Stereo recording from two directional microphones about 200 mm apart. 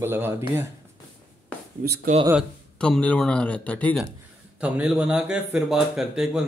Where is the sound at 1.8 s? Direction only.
40° right (ahead or behind).